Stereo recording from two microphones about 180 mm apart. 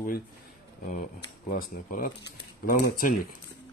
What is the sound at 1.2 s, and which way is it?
Speech, 50° left (ahead or behind).